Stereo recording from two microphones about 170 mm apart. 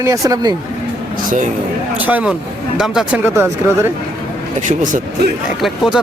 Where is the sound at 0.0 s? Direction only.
20° right (ahead or behind).